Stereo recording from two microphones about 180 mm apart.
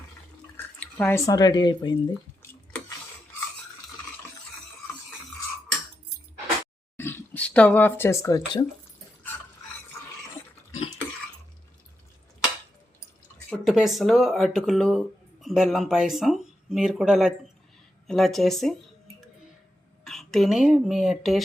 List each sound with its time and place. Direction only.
0.5 s speech: 10° left (ahead or behind); by 2.1 s 25° left (ahead or behind)
6.9 s speech: 10° left (ahead or behind)
13.5 s speech: centre (ahead or behind)
20.1 s speech: centre (ahead or behind)